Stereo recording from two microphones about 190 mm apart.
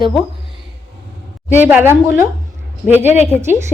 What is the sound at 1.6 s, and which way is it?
A woman's voice, 10° right (ahead or behind).